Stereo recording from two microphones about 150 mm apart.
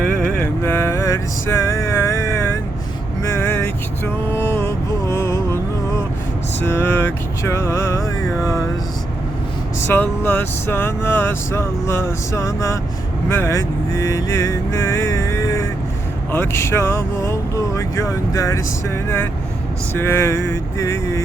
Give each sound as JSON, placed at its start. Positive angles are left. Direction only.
{"t": 0.6, "sound": "mantra", "side_deg": 15}
{"t": 3.2, "sound": "vehicle", "side_deg": 15}
{"t": 6.6, "sound": "vehicle", "side_deg": 15}
{"t": 9.8, "sound": "speech", "side_deg": 15}
{"t": 13.3, "sound": "vehicle", "side_deg": 15}
{"t": 16.3, "sound": "speech", "side_deg": 15}